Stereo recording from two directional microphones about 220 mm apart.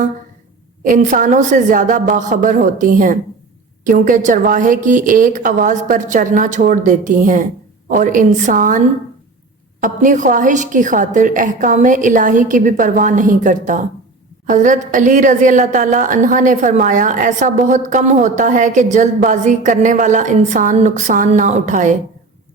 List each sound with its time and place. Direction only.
0.9 s a woman's voice: 35° right (ahead or behind)
9.8 s a woman's voice: 35° right (ahead or behind)